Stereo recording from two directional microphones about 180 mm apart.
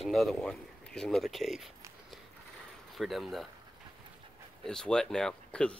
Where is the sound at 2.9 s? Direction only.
Centre (ahead or behind).